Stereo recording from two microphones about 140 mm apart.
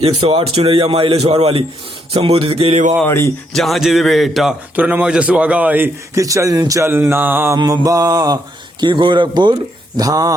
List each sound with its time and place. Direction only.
0.0 s a man's voice: 40° right (ahead or behind)
3.1 s speech: 20° left (ahead or behind)
3.5 s a man's voice: centre (ahead or behind)
4.7 s a man's voice: 10° right (ahead or behind)
7.6 s mantra: 25° right (ahead or behind)
8.8 s speech: 35° right (ahead or behind)
10.0 s mantra: 25° right (ahead or behind)